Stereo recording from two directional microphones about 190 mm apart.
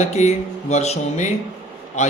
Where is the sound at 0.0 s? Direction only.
35° left (ahead or behind).